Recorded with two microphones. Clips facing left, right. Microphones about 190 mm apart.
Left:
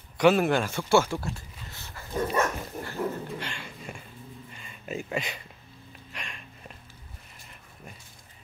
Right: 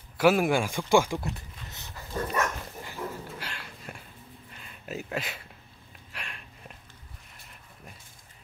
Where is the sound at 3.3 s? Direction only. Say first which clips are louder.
Left 4 dB; 5° right (ahead or behind).